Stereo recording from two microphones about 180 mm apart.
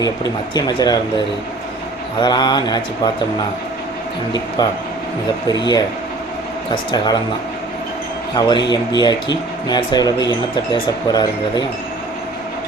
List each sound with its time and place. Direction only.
0.5 s speech: 20° left (ahead or behind)
2.2 s speech: 25° left (ahead or behind)
5.5 s speech: 25° left (ahead or behind)
8.4 s speech: 25° left (ahead or behind)